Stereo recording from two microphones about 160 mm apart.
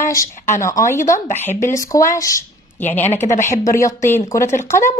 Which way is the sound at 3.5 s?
20° left (ahead or behind).